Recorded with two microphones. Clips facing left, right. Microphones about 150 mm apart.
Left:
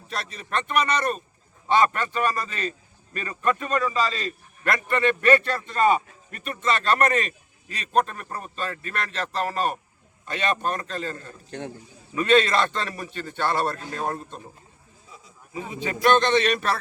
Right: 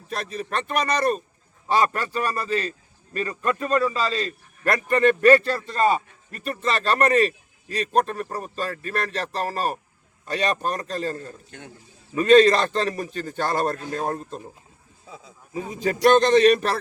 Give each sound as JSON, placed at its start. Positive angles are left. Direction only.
{"t": 0.7, "sound": "a man's voice", "side_deg": -35}
{"t": 11.5, "sound": "a man's voice", "side_deg": 35}
{"t": 12.1, "sound": "a man's voice", "side_deg": -40}
{"t": 15.5, "sound": "a man's voice", "side_deg": -40}